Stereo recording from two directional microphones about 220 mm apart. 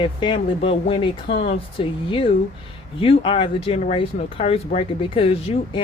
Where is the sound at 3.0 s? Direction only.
25° left (ahead or behind).